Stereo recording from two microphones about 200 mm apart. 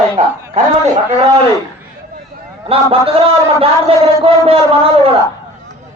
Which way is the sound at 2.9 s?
30° right (ahead or behind).